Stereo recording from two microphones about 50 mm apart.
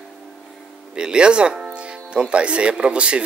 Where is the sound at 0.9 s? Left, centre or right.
Centre.